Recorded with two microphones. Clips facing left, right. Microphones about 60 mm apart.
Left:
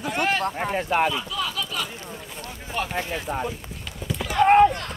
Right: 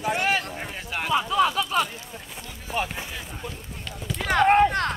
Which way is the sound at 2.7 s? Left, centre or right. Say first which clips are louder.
Right 1 dB; centre.